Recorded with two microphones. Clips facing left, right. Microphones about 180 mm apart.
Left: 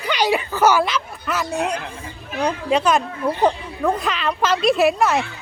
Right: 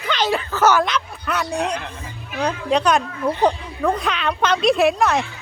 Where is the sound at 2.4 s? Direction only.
5° left (ahead or behind).